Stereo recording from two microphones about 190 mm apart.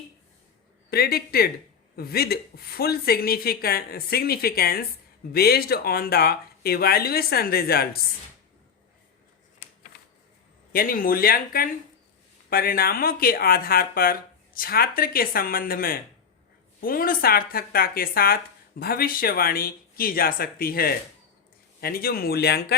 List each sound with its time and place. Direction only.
0.9 s speech: 55° left (ahead or behind)
10.7 s speech: 50° left (ahead or behind)